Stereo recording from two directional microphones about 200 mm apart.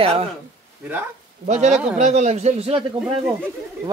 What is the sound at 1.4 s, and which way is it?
Speech, 35° right (ahead or behind).